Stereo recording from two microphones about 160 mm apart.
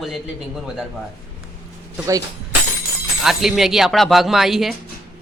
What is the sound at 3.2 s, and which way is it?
Speech, centre (ahead or behind).